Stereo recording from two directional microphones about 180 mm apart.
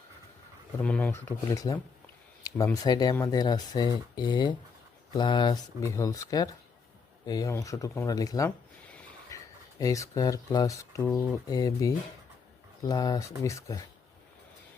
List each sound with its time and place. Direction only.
0.8 s speech: 5° left (ahead or behind)